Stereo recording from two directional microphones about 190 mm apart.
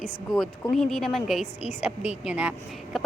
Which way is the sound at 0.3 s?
Centre (ahead or behind).